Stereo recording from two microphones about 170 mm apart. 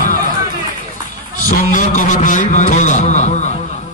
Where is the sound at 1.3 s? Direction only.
50° left (ahead or behind).